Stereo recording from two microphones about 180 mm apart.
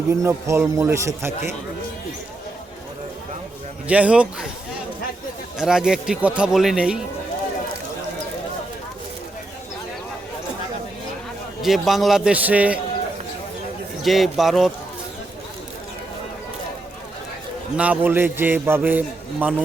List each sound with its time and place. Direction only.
0.1 s a man's voice: 15° right (ahead or behind)
3.8 s a man's voice: 5° right (ahead or behind)
5.5 s speech: 5° right (ahead or behind)
11.6 s speech: centre (ahead or behind)
14.0 s speech: centre (ahead or behind)
17.7 s a man's voice: 10° right (ahead or behind)